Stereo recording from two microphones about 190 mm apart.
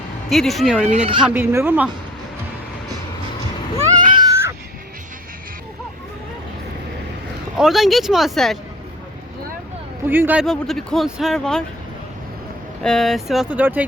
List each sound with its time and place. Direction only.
0.3 s speech: centre (ahead or behind)
0.9 s speech: 35° right (ahead or behind)
1.2 s speech: 10° right (ahead or behind)
4.1 s baby cry: 20° right (ahead or behind)
7.5 s speech: centre (ahead or behind)
10.1 s speech: 10° right (ahead or behind)
10.4 s speech: centre (ahead or behind)
12.8 s speech: centre (ahead or behind)